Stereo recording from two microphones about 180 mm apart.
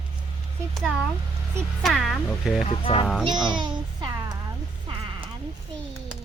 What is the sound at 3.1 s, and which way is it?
Speech, centre (ahead or behind).